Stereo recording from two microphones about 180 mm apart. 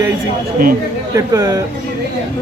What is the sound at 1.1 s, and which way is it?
Speech, 20° right (ahead or behind).